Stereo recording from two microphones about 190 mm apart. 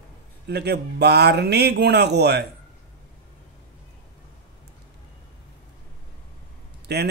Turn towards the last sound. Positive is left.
turn(degrees=-60)  # may be behind; listen again after turning